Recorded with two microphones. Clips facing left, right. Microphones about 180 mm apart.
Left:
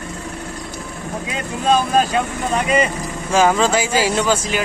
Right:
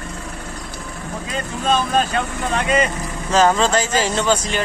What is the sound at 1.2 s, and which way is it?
Vehicle, 5° left (ahead or behind).